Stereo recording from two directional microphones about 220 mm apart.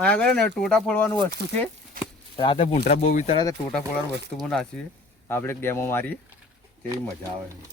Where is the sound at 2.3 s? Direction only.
25° left (ahead or behind).